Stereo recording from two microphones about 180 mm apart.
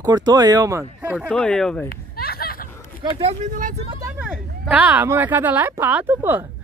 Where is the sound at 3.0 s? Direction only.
30° right (ahead or behind).